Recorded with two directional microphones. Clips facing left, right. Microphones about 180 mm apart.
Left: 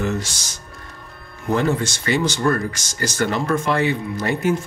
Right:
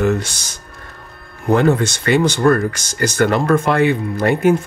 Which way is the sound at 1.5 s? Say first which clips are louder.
Right 6 dB; 60° right (ahead or behind).